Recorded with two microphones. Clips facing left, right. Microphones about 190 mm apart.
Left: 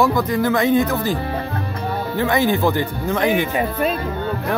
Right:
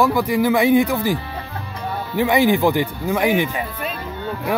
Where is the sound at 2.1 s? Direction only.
15° right (ahead or behind).